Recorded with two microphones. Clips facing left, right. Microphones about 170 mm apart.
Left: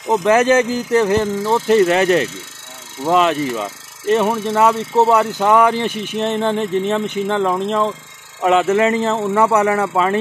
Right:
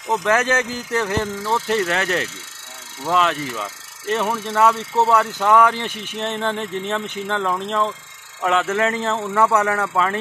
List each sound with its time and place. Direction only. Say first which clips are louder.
0.1 s speech: left 6 dB; 15° left (ahead or behind)
9.2 s speech: left 2 dB; 20° left (ahead or behind)